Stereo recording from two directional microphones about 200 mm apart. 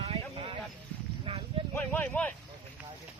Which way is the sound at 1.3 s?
25° right (ahead or behind).